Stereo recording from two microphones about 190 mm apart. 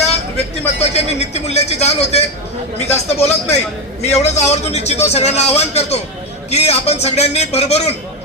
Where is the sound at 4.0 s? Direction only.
35° left (ahead or behind).